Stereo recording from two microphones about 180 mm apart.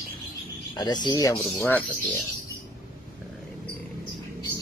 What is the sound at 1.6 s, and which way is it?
Speech, 5° left (ahead or behind).